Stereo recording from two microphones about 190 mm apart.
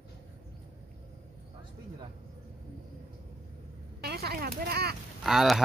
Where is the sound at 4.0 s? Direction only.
55° right (ahead or behind).